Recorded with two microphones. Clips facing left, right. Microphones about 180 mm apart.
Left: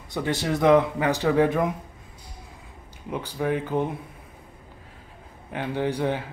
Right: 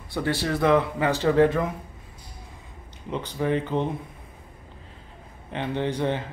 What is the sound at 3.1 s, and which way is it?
Speech, 10° left (ahead or behind).